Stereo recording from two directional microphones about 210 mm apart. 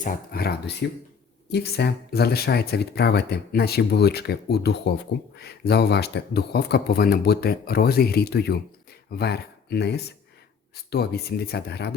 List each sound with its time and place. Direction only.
0.0 s speech: 50° left (ahead or behind)